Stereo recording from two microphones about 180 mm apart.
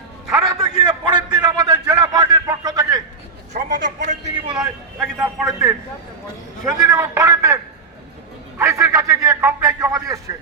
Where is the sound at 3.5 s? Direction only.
45° right (ahead or behind).